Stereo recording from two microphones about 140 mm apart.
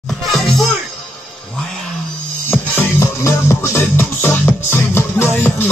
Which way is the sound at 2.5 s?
15° left (ahead or behind).